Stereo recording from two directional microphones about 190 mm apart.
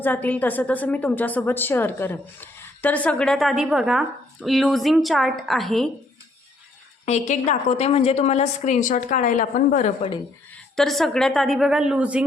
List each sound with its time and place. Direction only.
0.0 s a woman's voice: 10° left (ahead or behind)
7.0 s a woman's voice: 35° left (ahead or behind)
10.8 s a woman's voice: centre (ahead or behind)